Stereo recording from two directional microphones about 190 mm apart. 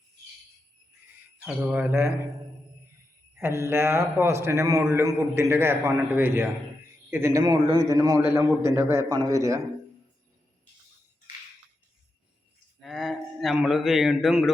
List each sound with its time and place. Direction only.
1.5 s a man's voice: 10° right (ahead or behind)
3.3 s a man's voice: 15° right (ahead or behind)
12.8 s a man's voice: centre (ahead or behind)